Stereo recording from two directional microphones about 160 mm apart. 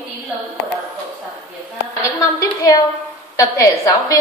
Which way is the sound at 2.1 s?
20° left (ahead or behind).